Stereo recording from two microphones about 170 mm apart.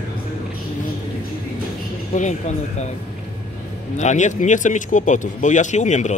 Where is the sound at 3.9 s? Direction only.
45° left (ahead or behind).